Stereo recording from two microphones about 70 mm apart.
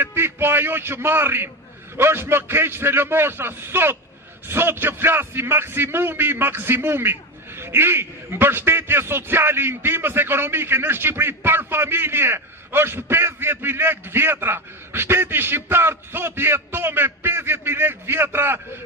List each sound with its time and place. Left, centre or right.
0.0 s a man's voice: right